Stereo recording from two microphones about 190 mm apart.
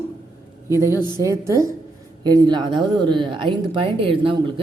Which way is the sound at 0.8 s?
15° left (ahead or behind).